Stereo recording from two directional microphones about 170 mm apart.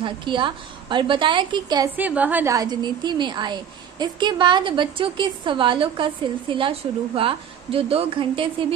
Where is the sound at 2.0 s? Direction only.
10° right (ahead or behind).